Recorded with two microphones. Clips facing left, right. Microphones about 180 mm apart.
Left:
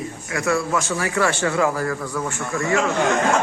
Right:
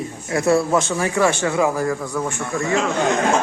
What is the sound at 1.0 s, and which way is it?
A man's voice, 20° right (ahead or behind).